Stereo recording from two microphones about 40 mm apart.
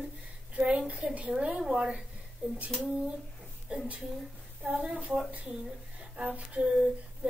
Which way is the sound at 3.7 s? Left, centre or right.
Right.